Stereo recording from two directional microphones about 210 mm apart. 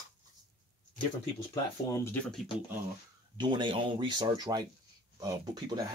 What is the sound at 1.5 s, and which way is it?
Speech, 15° left (ahead or behind).